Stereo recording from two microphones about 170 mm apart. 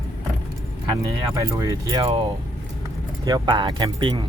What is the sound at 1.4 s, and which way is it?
Speech, 20° right (ahead or behind).